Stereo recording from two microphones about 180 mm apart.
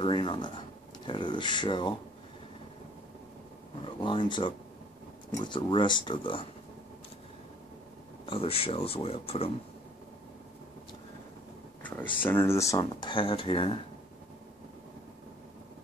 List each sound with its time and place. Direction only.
0.0 s speech: 25° left (ahead or behind)
3.8 s speech: 25° left (ahead or behind)
8.3 s speech: 30° left (ahead or behind)
11.8 s speech: 10° left (ahead or behind); by 13.7 s 30° left (ahead or behind)